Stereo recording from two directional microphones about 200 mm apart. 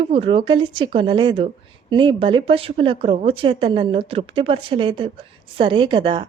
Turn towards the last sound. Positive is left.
turn(degrees=-25)  # may be behind; listen again after turning